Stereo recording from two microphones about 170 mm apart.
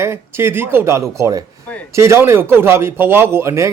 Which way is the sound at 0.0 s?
15° right (ahead or behind).